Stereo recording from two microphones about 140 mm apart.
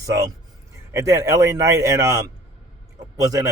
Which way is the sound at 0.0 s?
25° right (ahead or behind).